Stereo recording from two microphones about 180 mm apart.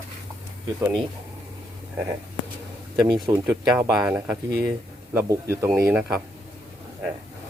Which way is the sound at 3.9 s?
5° right (ahead or behind).